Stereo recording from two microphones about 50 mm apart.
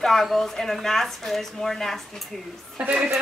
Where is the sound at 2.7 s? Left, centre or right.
Right.